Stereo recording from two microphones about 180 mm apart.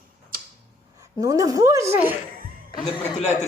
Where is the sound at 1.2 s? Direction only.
20° right (ahead or behind).